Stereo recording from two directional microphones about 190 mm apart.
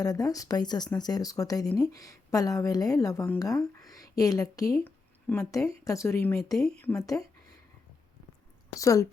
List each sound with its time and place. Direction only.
0.0 s speech: 20° left (ahead or behind)
8.7 s a woman's voice: 15° left (ahead or behind)